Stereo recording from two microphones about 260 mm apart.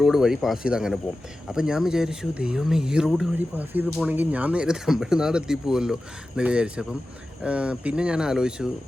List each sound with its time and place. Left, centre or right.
0.0 s speech: centre